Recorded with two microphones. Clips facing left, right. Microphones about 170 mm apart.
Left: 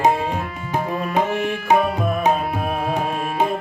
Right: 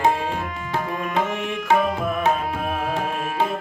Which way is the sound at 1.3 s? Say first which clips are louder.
Left 5 dB; 35° left (ahead or behind).